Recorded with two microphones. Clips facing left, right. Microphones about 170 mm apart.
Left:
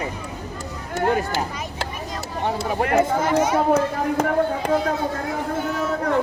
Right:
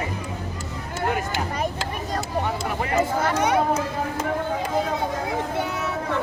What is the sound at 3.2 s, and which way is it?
Speech, 60° right (ahead or behind).